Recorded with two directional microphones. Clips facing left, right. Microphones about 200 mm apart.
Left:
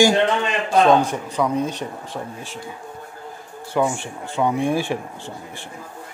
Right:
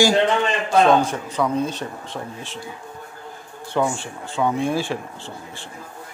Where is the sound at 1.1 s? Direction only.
15° left (ahead or behind).